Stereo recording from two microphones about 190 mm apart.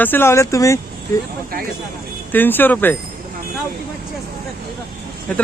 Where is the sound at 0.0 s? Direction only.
10° left (ahead or behind).